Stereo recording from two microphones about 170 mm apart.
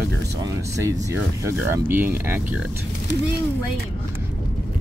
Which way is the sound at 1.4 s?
15° right (ahead or behind).